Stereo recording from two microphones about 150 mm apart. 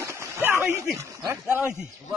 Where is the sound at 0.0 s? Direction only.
15° right (ahead or behind).